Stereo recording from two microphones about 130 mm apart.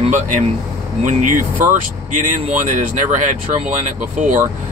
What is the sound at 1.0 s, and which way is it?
Speech, 90° right.